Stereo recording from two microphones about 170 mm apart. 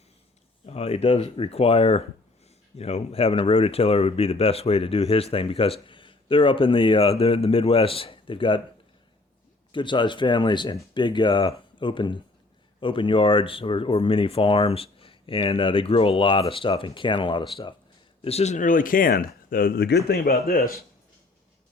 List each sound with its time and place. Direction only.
0.6 s speech: 35° left (ahead or behind)
9.7 s speech: 30° left (ahead or behind); by 20.7 s 65° left (ahead or behind)